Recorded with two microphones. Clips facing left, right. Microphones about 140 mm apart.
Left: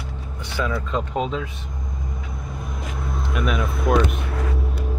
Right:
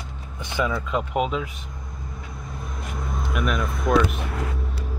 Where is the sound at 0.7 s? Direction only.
10° right (ahead or behind).